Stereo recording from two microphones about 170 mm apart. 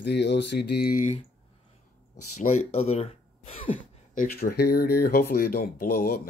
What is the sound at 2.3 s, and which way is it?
Speech, 40° left (ahead or behind).